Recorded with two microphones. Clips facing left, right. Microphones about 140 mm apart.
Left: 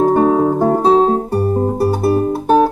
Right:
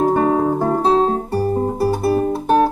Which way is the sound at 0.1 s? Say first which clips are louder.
Left 3 dB; 10° left (ahead or behind).